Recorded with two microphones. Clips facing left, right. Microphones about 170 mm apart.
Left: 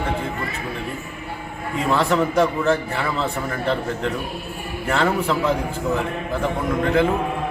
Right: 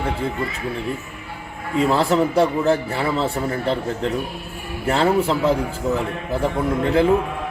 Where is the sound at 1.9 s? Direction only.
30° right (ahead or behind).